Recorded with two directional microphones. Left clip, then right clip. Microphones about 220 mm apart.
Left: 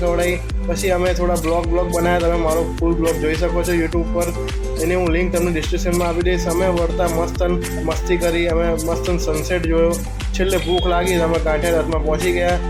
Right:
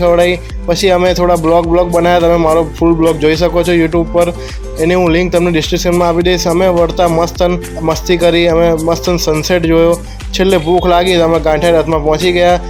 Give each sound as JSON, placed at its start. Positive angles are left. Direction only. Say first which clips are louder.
{"t": 0.0, "sound": "speech", "louder": "right 10 dB", "side_deg": -40}
{"t": 4.9, "sound": "speech", "louder": "right 8 dB", "side_deg": -40}